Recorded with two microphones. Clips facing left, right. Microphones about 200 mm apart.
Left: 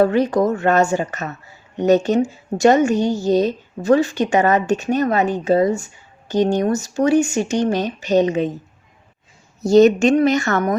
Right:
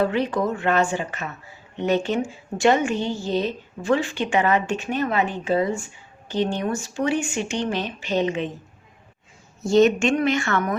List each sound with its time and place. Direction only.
0.0 s a woman's voice: 40° left (ahead or behind)
9.6 s a woman's voice: 40° left (ahead or behind)